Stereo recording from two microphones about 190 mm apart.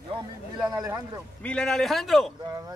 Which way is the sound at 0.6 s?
15° right (ahead or behind).